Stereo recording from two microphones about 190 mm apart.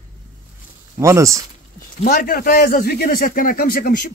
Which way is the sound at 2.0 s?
45° left (ahead or behind).